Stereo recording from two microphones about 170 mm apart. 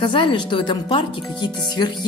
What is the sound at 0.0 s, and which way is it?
Speech, 30° left (ahead or behind).